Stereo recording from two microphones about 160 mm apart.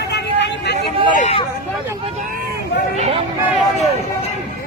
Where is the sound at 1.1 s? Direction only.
50° left (ahead or behind).